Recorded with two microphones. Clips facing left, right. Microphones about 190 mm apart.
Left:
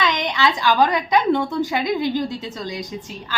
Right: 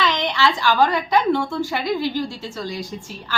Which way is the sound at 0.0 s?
15° left (ahead or behind).